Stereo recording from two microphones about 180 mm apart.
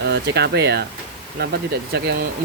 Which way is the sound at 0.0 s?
70° right (ahead or behind).